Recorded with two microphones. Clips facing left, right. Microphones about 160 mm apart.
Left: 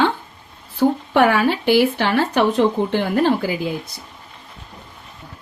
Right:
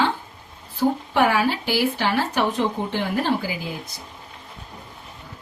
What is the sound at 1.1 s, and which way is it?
Speech, 60° left (ahead or behind).